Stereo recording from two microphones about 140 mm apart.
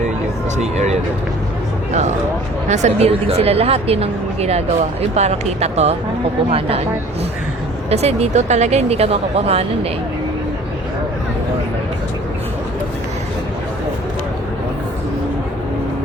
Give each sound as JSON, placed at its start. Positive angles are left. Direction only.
{"t": 2.6, "sound": "speech", "side_deg": -55}
{"t": 7.9, "sound": "speech", "side_deg": -50}